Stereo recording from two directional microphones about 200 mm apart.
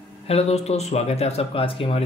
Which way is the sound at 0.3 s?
30° left (ahead or behind).